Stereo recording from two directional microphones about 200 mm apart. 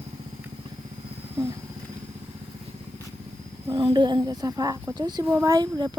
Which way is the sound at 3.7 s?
20° right (ahead or behind).